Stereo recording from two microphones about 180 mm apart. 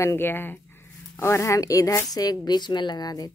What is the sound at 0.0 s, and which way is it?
A woman's voice, 10° left (ahead or behind).